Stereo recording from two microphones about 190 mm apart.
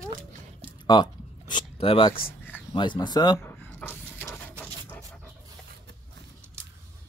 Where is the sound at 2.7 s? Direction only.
25° left (ahead or behind).